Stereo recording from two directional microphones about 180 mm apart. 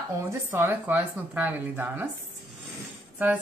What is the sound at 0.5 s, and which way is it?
Speech, 10° right (ahead or behind).